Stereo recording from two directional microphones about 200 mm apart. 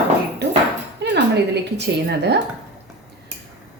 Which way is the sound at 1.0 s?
60° right (ahead or behind).